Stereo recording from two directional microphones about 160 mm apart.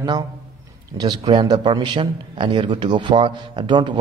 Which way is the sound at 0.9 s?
25° right (ahead or behind).